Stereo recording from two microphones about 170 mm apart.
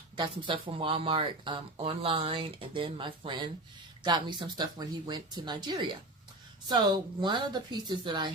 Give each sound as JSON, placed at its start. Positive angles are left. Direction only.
{"t": 0.2, "sound": "speech", "side_deg": -30}